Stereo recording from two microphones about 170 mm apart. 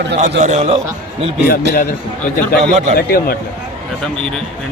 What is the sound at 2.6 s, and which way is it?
Speech, 45° right (ahead or behind).